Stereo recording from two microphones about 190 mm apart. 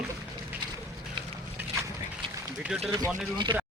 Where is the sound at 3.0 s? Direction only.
25° right (ahead or behind).